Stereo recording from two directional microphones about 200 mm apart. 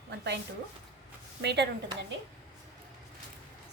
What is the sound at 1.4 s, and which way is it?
Speech, 60° right (ahead or behind).